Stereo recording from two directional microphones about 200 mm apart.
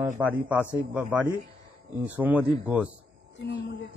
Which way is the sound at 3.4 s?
60° left (ahead or behind).